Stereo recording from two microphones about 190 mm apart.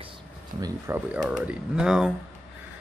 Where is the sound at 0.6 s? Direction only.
15° right (ahead or behind).